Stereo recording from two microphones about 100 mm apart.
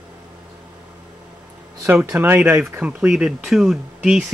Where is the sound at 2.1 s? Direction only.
15° right (ahead or behind).